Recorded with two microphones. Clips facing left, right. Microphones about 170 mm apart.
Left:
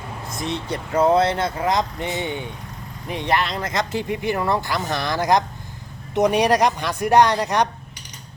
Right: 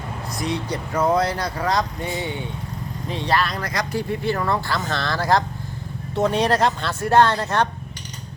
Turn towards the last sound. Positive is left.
turn(degrees=15)  # may be behind; listen again after turning